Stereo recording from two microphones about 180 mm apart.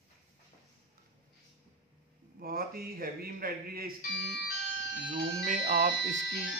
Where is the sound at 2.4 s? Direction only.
55° right (ahead or behind).